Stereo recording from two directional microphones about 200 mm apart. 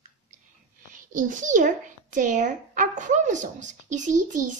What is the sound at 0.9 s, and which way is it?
A child's voice, 40° right (ahead or behind).